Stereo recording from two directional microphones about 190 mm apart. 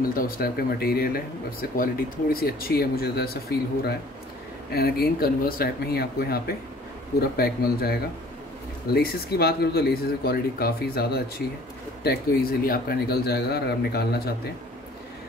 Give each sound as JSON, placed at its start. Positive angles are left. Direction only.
{"t": 0.1, "sound": "speech", "side_deg": 50}